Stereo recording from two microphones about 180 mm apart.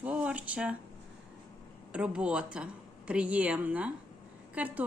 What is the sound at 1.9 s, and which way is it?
A woman's voice, 5° right (ahead or behind).